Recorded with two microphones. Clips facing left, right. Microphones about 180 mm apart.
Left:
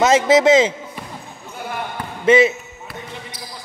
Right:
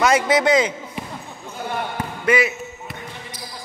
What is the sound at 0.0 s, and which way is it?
Speech, 25° left (ahead or behind).